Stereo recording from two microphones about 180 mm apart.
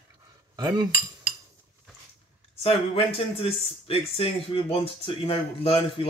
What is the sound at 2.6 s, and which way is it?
Speech, 30° left (ahead or behind).